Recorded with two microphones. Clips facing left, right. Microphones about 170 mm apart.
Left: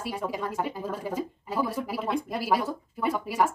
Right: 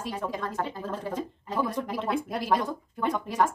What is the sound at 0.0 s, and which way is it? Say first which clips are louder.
Speech: left 1 dB; 10° left (ahead or behind).